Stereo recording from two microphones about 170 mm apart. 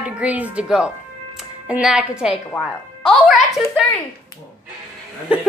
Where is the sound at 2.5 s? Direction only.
15° left (ahead or behind).